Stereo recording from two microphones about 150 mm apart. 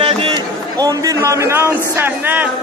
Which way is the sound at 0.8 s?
25° right (ahead or behind).